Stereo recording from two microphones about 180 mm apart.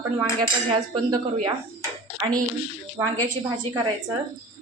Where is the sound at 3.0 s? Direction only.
15° right (ahead or behind).